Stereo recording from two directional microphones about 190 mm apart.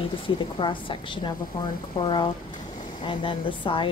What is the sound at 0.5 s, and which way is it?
Speech, 25° left (ahead or behind).